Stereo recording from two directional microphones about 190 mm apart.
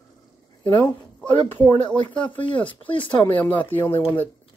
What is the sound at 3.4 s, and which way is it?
Speech, 10° left (ahead or behind).